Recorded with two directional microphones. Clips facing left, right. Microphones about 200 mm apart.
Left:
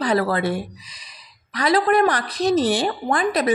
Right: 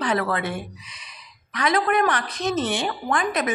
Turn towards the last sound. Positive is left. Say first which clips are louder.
# left 3 dB
turn(degrees=35)  # may be behind; listen again after turning